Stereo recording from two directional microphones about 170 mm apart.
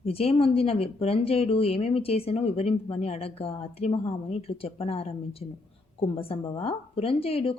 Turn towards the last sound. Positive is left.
turn(degrees=35)  # may be behind; listen again after turning